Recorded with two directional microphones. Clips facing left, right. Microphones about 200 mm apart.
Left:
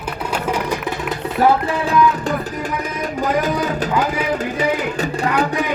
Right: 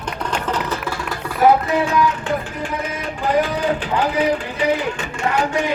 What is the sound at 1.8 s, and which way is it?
Music, 35° left (ahead or behind).